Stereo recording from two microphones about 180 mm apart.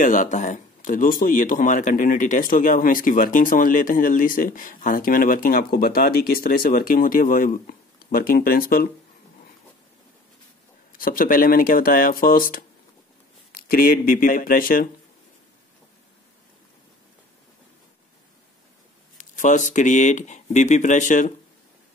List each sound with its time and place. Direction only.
0.0 s speech: 45° left (ahead or behind)
10.9 s speech: 50° left (ahead or behind)
19.1 s speech: 45° left (ahead or behind)